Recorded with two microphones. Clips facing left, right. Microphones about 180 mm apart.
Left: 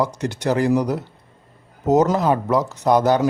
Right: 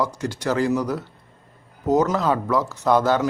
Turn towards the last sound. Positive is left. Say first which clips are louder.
# left 2 dB
turn(degrees=15)  # may be behind; listen again after turning